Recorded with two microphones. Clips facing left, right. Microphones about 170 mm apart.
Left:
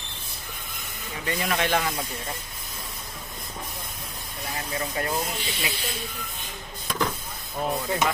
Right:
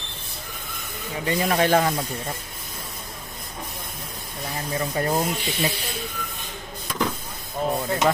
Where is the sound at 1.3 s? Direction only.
30° right (ahead or behind).